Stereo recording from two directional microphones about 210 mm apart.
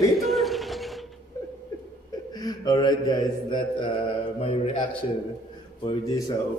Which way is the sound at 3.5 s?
25° left (ahead or behind).